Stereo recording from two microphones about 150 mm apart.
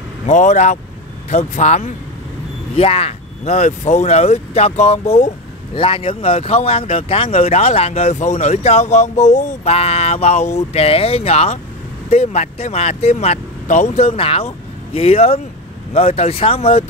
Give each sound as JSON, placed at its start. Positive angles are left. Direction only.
{"t": 0.3, "sound": "speech", "side_deg": 55}
{"t": 2.7, "sound": "speech", "side_deg": 40}
{"t": 5.8, "sound": "speech", "side_deg": 35}